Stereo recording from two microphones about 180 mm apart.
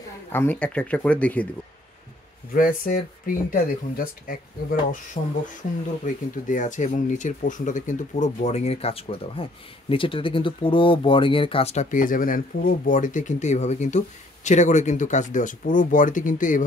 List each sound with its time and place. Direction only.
0.3 s speech: 10° left (ahead or behind)
2.5 s speech: 50° left (ahead or behind)